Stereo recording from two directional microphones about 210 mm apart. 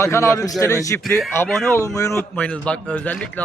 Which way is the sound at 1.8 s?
15° left (ahead or behind).